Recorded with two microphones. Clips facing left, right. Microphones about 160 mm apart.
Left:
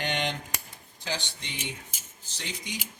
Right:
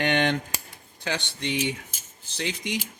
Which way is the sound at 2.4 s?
90° right.